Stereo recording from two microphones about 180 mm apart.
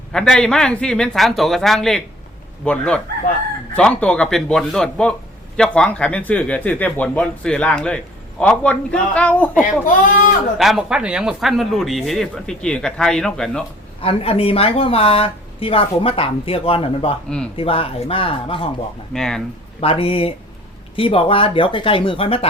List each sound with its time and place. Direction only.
0.1 s speech: 5° left (ahead or behind)
9.8 s speech: 45° left (ahead or behind)
10.6 s speech: centre (ahead or behind)
14.0 s a woman's voice: 35° left (ahead or behind)
17.2 s speech: 5° left (ahead or behind)
17.6 s a woman's voice: 30° left (ahead or behind)
19.1 s speech: 5° left (ahead or behind)
19.8 s a woman's voice: 30° left (ahead or behind)